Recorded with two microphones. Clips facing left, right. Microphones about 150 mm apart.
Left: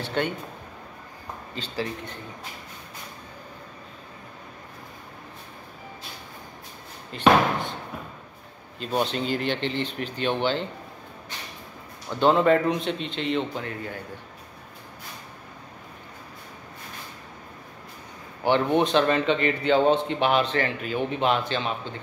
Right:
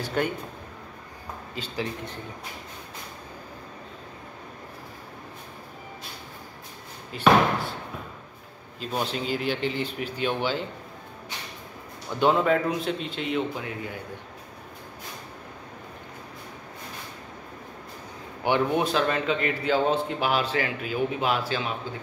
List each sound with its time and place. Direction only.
0.0 s speech: 5° right (ahead or behind)
1.5 s speech: 10° right (ahead or behind)
7.1 s speech: 5° right (ahead or behind)
8.7 s speech: 5° right (ahead or behind)
12.2 s a man's voice: 5° right (ahead or behind)
18.4 s a man's voice: 10° right (ahead or behind)